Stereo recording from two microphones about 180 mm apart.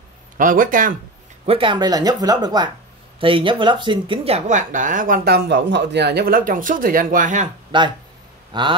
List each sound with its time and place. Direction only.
0.4 s speech: 50° right (ahead or behind)
1.4 s speech: 30° right (ahead or behind); by 7.4 s 50° right (ahead or behind)
7.7 s speech: 25° right (ahead or behind)